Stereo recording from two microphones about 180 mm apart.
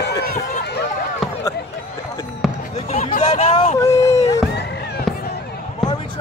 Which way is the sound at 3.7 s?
15° left (ahead or behind).